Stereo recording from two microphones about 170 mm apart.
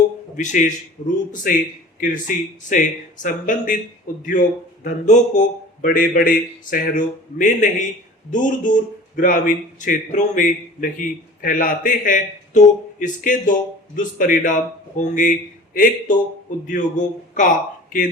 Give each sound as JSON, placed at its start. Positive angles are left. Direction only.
{"t": 0.3, "sound": "speech", "side_deg": 50}